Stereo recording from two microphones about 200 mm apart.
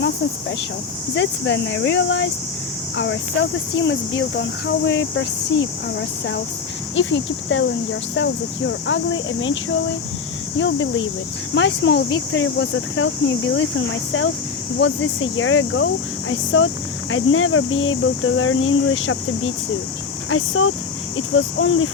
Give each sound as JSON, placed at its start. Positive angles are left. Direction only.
{"t": 1.1, "sound": "speech", "side_deg": 65}
{"t": 3.8, "sound": "speech", "side_deg": 60}
{"t": 6.9, "sound": "speech", "side_deg": 65}
{"t": 10.6, "sound": "speech", "side_deg": 70}